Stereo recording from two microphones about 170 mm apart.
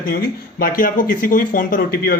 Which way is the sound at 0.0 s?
60° left (ahead or behind).